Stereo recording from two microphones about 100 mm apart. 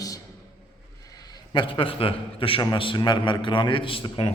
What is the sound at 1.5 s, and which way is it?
A man's voice, 60° left (ahead or behind).